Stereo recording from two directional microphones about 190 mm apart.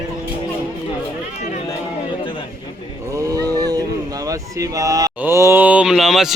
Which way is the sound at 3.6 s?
20° right (ahead or behind).